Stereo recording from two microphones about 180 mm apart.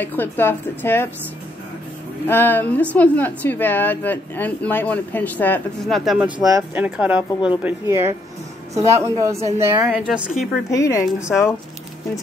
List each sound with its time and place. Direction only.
0.0 s a woman's voice: 10° left (ahead or behind)
2.2 s a woman's voice: 10° left (ahead or behind)
6.2 s speech: 25° right (ahead or behind)
6.7 s speech: 5° right (ahead or behind)
9.9 s a woman's voice: 5° right (ahead or behind)
10.7 s a woman's voice: 15° left (ahead or behind)
11.2 s a woman's voice: centre (ahead or behind)